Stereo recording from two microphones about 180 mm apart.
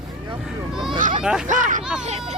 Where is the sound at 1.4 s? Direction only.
45° right (ahead or behind).